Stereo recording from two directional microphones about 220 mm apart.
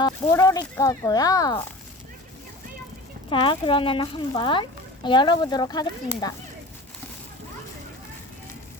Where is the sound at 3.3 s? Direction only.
20° left (ahead or behind).